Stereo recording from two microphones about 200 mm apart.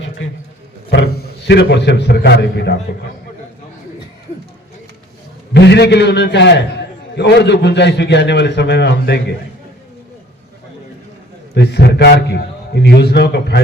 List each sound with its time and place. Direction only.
0.9 s a man's voice: 55° left (ahead or behind)
5.5 s a man's voice: 55° left (ahead or behind)
11.5 s a man's voice: 55° left (ahead or behind)